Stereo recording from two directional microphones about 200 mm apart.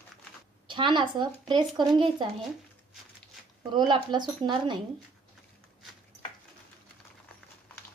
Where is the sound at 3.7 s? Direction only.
20° right (ahead or behind).